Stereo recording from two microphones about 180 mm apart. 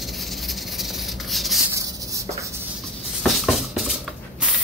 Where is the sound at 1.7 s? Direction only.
15° right (ahead or behind).